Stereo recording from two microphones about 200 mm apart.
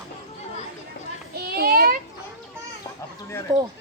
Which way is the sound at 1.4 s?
50° right (ahead or behind).